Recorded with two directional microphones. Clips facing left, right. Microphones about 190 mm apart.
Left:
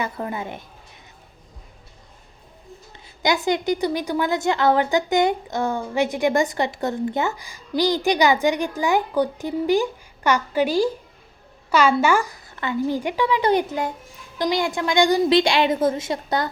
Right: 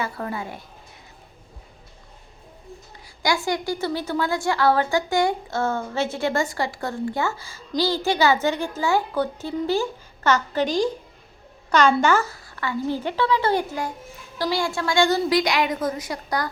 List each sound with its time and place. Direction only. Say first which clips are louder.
0.0 s a woman's voice: left 1 dB; 20° left (ahead or behind)
3.2 s a woman's voice: left 3 dB; 20° left (ahead or behind)
15.4 s a woman's voice: left 4 dB; 25° left (ahead or behind)